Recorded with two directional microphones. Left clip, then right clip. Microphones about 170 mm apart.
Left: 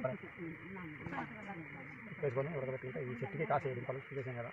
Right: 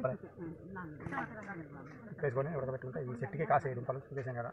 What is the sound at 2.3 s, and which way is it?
A man's voice, 5° right (ahead or behind).